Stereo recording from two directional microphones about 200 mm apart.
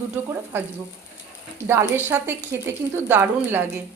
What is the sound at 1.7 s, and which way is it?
Speech, 10° right (ahead or behind).